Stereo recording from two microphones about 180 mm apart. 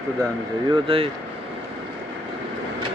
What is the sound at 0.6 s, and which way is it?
Speech, 25° right (ahead or behind).